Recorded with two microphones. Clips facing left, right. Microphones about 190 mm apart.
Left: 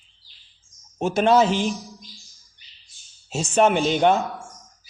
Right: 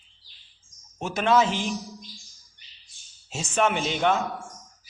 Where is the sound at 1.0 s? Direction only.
30° left (ahead or behind).